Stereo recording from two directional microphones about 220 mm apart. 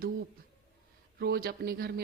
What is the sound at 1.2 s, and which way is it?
Speech, 45° right (ahead or behind).